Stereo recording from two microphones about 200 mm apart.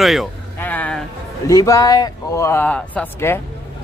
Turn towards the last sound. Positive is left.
turn(degrees=10)  # may be behind; listen again after turning